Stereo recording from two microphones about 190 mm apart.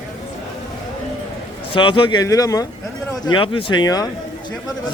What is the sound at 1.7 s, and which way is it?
A man's voice, 25° left (ahead or behind).